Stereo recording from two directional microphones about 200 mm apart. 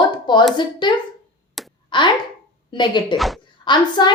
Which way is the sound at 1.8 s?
25° left (ahead or behind).